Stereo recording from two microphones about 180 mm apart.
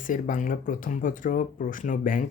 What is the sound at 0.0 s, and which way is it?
Speech, 50° left (ahead or behind).